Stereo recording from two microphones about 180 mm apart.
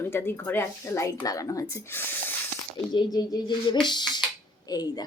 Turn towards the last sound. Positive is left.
turn(degrees=20)  # may be behind; listen again after turning